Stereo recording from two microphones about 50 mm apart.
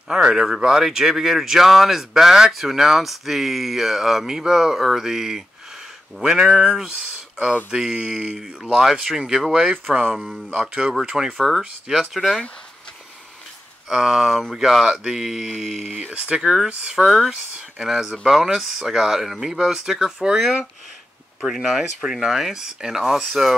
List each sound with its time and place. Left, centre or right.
0.1 s speech: centre
6.8 s speech: centre
7.7 s speech: centre
10.0 s speech: centre
10.5 s speech: centre
13.8 s speech: centre
16.1 s speech: right